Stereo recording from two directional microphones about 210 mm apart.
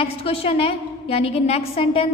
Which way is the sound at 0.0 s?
25° left (ahead or behind).